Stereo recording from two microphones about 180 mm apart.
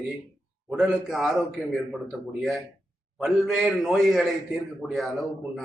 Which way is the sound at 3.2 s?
Centre (ahead or behind).